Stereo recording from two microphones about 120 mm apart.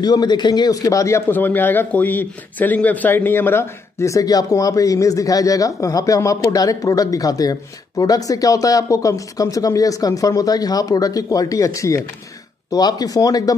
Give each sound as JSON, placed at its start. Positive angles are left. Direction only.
{"t": 0.0, "sound": "a man's voice", "side_deg": 35}